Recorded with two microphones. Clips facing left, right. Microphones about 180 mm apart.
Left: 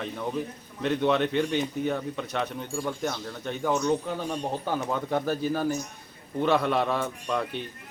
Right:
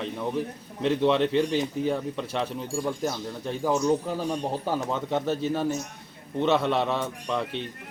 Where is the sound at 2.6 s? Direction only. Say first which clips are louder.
Right 2 dB; 5° right (ahead or behind).